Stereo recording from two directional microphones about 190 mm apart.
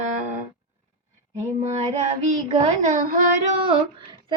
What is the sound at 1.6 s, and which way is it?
Female singing, 35° right (ahead or behind).